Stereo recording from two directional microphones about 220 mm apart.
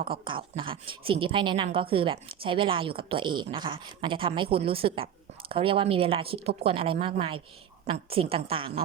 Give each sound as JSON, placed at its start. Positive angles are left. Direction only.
{"t": 0.1, "sound": "a woman's voice", "side_deg": -25}